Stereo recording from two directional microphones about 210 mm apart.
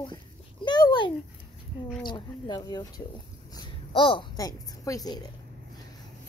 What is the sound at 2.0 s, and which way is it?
A woman's voice, 20° left (ahead or behind).